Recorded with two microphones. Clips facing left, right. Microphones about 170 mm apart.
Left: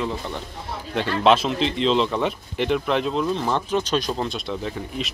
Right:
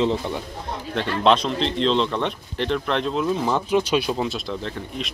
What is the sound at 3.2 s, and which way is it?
Speech, 5° right (ahead or behind).